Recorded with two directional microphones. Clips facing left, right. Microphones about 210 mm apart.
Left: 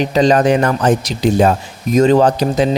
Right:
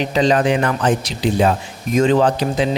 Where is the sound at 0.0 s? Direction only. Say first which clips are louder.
Left 4 dB; 45° left (ahead or behind).